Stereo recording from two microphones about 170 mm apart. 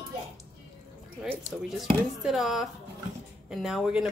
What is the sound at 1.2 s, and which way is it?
Speech, centre (ahead or behind).